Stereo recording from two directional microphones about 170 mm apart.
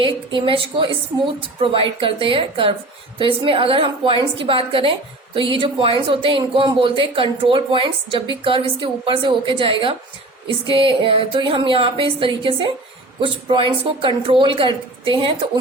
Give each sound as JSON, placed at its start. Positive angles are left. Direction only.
{"t": 0.0, "sound": "a woman's voice", "side_deg": -30}